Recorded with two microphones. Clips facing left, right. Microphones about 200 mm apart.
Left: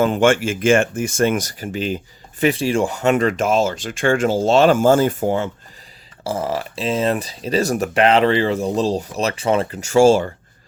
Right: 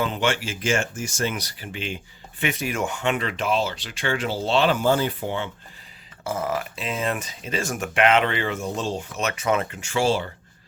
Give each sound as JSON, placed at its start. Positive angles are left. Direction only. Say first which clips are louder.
{"t": 0.0, "sound": "speech", "louder": "left 9 dB", "side_deg": 50}
{"t": 6.2, "sound": "speech", "louder": "left 4 dB", "side_deg": 30}